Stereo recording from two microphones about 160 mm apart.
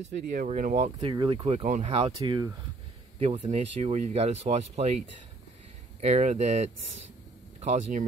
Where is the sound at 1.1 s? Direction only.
30° right (ahead or behind).